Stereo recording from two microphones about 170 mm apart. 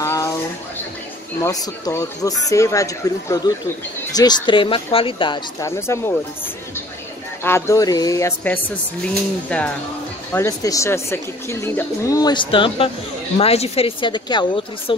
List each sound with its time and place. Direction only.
0.0 s a sound: 15° left (ahead or behind)
1.4 s speech: 20° left (ahead or behind)
5.7 s speech: 15° left (ahead or behind)
10.3 s a woman's voice: 20° left (ahead or behind)